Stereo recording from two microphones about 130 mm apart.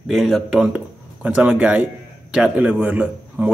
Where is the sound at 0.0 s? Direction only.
Centre (ahead or behind).